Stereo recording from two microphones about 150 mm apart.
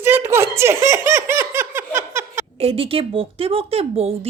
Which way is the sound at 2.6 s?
40° right (ahead or behind).